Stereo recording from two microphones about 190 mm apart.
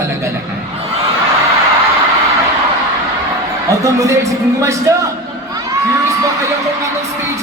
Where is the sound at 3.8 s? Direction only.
15° right (ahead or behind).